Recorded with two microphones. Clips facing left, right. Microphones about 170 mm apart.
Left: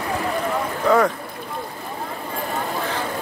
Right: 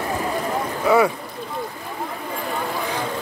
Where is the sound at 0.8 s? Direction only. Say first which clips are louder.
Right 1 dB; 10° right (ahead or behind).